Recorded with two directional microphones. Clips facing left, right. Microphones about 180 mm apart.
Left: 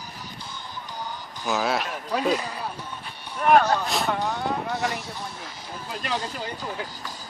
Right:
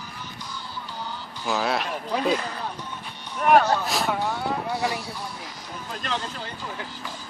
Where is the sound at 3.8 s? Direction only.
Centre (ahead or behind).